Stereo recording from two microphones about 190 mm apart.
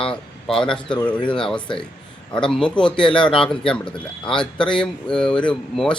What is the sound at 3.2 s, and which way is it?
Speech, 25° left (ahead or behind).